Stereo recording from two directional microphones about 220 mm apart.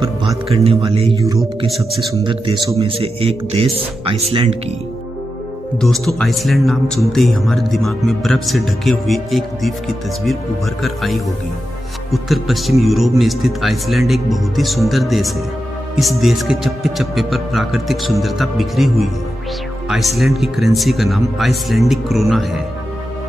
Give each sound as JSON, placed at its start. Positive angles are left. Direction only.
{"t": 0.5, "sound": "speech", "side_deg": -25}
{"t": 1.7, "sound": "speech", "side_deg": 0}
{"t": 2.2, "sound": "speech", "side_deg": -20}
{"t": 5.8, "sound": "speech", "side_deg": 0}
{"t": 10.8, "sound": "speech", "side_deg": 0}